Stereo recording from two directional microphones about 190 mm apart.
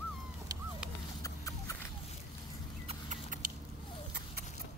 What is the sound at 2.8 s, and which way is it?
Vehicle, 35° right (ahead or behind).